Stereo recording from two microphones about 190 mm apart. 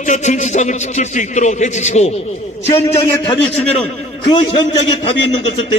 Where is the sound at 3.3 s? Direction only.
30° left (ahead or behind).